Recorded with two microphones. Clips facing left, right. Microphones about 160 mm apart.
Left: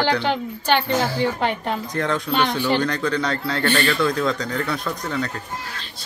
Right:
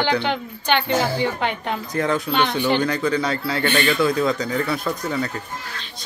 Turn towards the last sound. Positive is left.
turn(degrees=-5)  # may be behind; listen again after turning